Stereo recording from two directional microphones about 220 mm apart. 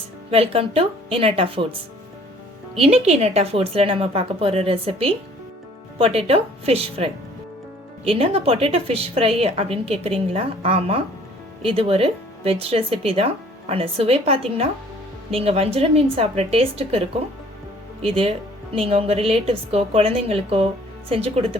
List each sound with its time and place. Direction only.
0.3 s a woman's voice: 25° right (ahead or behind)
2.8 s a woman's voice: 30° right (ahead or behind)
18.0 s a woman's voice: 25° right (ahead or behind)